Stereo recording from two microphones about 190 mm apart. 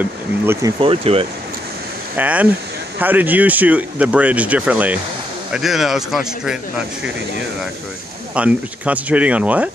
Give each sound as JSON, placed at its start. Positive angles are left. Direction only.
{"t": 0.0, "sound": "speech", "side_deg": -15}
{"t": 0.7, "sound": "speech", "side_deg": -30}
{"t": 2.1, "sound": "speech", "side_deg": -10}
{"t": 8.4, "sound": "speech", "side_deg": -5}